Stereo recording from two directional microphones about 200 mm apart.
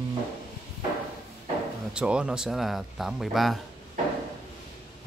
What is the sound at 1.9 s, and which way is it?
Speech, 5° right (ahead or behind).